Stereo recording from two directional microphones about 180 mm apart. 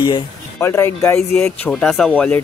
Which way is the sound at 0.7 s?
15° left (ahead or behind).